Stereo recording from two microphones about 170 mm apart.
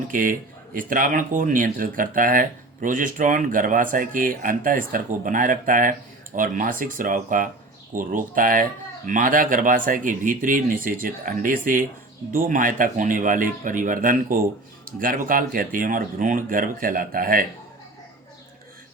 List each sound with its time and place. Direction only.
0.1 s speech: 55° right (ahead or behind)